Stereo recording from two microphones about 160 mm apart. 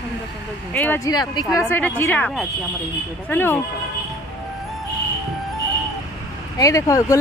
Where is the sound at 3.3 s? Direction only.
15° left (ahead or behind).